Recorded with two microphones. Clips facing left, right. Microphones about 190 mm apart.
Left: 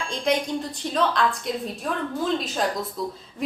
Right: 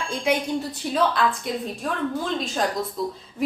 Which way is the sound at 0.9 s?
5° right (ahead or behind).